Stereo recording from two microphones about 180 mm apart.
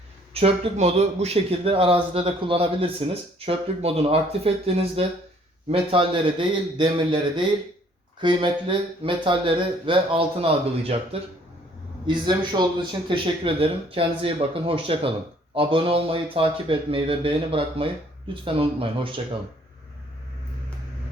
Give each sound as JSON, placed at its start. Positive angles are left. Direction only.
{"t": 0.3, "sound": "speech", "side_deg": -30}